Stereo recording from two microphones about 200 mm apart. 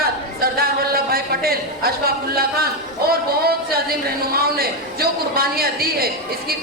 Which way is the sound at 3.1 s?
50° right (ahead or behind).